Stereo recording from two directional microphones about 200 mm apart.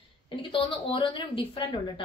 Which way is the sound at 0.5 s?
25° left (ahead or behind).